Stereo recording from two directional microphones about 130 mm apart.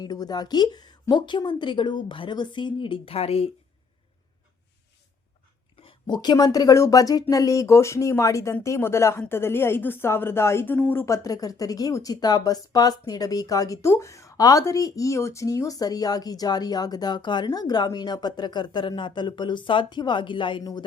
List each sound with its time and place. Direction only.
0.0 s a woman's voice: 30° left (ahead or behind); by 3.5 s 50° left (ahead or behind)
5.7 s a woman's voice: 40° left (ahead or behind)